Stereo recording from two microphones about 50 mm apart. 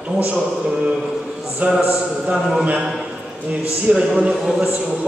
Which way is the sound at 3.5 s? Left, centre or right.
Right.